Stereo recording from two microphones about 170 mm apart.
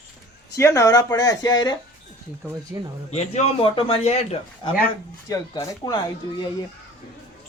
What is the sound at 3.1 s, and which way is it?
A man's voice, 40° left (ahead or behind).